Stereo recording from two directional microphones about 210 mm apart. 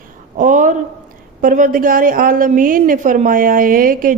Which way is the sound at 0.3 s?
40° right (ahead or behind).